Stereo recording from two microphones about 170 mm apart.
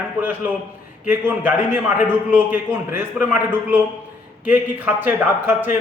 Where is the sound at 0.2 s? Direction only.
10° right (ahead or behind).